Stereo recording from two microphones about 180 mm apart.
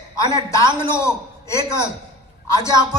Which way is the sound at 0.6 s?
25° right (ahead or behind).